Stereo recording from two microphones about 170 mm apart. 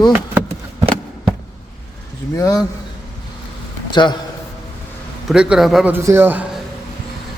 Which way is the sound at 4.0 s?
25° left (ahead or behind).